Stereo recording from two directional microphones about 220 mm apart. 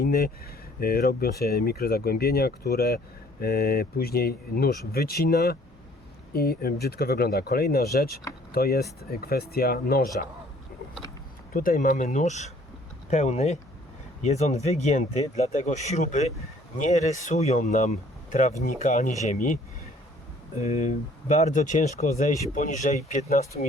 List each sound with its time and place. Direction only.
0.0 s speech: 45° left (ahead or behind)
11.5 s speech: 40° left (ahead or behind)
20.6 s speech: 30° left (ahead or behind)